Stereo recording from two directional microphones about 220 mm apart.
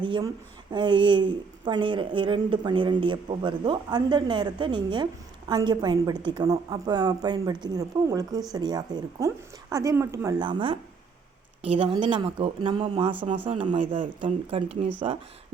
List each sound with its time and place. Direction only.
0.0 s a woman's voice: 20° right (ahead or behind)